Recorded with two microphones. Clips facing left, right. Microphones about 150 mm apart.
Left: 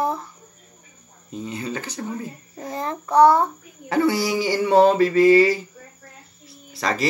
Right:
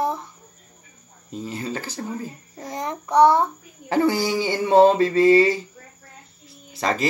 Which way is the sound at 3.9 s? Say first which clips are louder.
Even; 35° right (ahead or behind).